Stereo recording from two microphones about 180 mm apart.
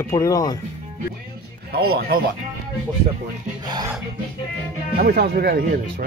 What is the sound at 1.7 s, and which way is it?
Speech, 60° right (ahead or behind).